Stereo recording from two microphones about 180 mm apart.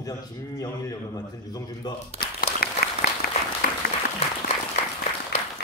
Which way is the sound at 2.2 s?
55° left (ahead or behind).